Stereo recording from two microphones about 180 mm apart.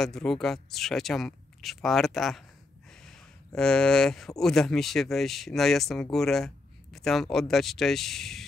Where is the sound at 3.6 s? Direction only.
5° left (ahead or behind).